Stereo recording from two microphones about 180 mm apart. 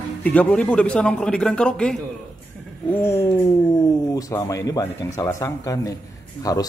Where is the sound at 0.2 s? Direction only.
10° left (ahead or behind).